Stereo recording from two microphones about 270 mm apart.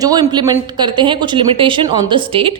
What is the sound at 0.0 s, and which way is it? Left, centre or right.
A woman's voice, centre.